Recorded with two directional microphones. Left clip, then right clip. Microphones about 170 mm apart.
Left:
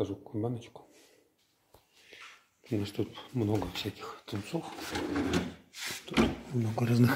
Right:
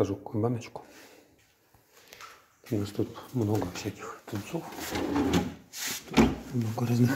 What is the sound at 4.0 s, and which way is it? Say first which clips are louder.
Speech: right 2 dB; 30° left (ahead or behind).